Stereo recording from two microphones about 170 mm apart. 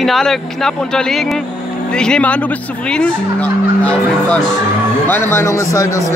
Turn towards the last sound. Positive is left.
turn(degrees=20)  # may be behind; listen again after turning